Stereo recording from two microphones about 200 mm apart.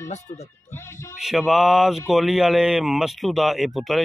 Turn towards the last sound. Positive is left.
turn(degrees=0)  # may be behind; listen again after turning